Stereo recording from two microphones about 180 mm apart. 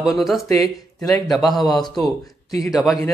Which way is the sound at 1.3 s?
Centre (ahead or behind).